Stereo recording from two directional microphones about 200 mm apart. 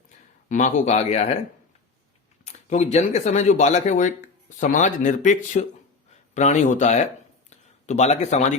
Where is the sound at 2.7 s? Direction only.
35° left (ahead or behind).